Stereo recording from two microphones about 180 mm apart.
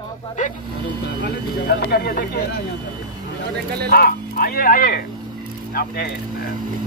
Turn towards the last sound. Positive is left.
turn(degrees=60)  # may be behind; listen again after turning